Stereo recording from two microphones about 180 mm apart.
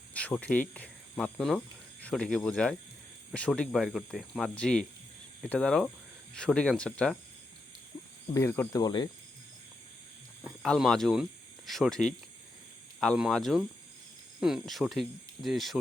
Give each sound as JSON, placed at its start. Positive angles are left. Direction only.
{"t": 0.1, "sound": "cricket", "side_deg": 5}
{"t": 0.7, "sound": "speech", "side_deg": 5}
{"t": 8.3, "sound": "speech", "side_deg": 15}
{"t": 10.4, "sound": "speech", "side_deg": 0}